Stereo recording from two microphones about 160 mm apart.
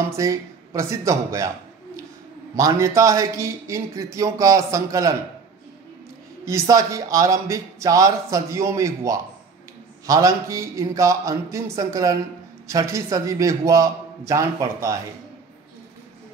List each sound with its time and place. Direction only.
0.0 s speech: 20° right (ahead or behind)
2.5 s speech: 20° right (ahead or behind)
6.4 s speech: 20° right (ahead or behind)